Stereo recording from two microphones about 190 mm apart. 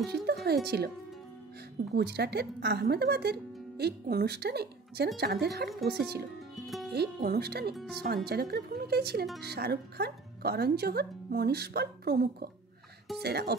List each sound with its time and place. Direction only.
0.0 s speech: 55° right (ahead or behind)
2.0 s speech: 60° right (ahead or behind)
6.5 s music: centre (ahead or behind)
6.9 s speech: 55° right (ahead or behind)